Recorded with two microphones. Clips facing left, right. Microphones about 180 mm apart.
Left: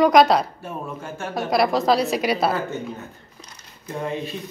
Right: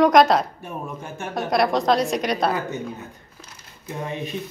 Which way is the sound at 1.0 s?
15° right (ahead or behind).